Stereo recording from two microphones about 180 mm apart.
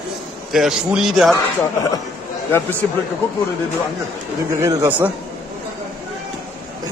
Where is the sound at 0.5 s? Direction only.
Centre (ahead or behind).